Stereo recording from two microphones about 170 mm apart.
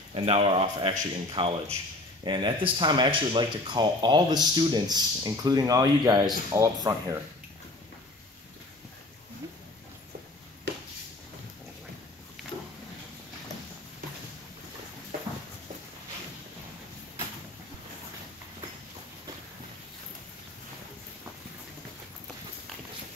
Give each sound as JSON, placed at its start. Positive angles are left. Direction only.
{"t": 0.1, "sound": "speech", "side_deg": -35}